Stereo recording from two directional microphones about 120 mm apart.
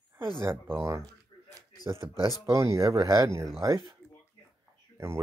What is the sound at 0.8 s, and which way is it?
Speech, 25° right (ahead or behind).